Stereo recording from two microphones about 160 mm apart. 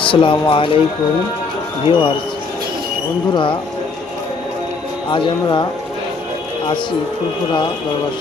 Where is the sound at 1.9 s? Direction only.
30° left (ahead or behind).